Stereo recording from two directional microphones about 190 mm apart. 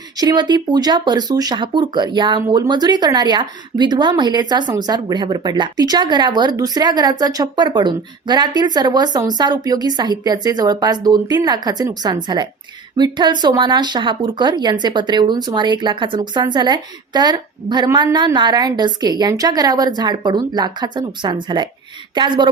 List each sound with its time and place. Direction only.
0.2 s a woman's voice: 25° right (ahead or behind)